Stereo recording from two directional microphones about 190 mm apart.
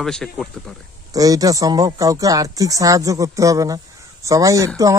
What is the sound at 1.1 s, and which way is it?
Speech, 20° right (ahead or behind).